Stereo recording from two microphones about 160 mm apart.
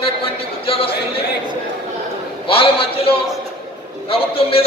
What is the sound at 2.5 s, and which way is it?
A man's voice, 35° left (ahead or behind).